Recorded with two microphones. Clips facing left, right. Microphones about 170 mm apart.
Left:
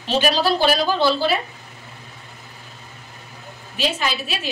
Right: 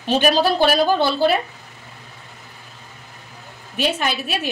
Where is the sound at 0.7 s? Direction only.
55° right (ahead or behind).